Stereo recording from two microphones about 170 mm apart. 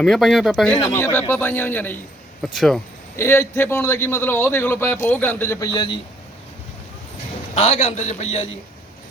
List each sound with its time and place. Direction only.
0.0 s speech: centre (ahead or behind)
0.9 s a man's voice: 15° left (ahead or behind)
3.2 s a man's voice: 15° left (ahead or behind)
7.5 s a man's voice: 35° left (ahead or behind)